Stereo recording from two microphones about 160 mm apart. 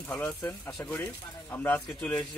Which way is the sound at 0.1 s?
5° left (ahead or behind).